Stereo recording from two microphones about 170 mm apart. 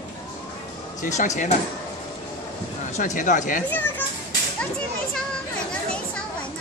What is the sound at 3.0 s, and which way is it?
Speech, 50° left (ahead or behind).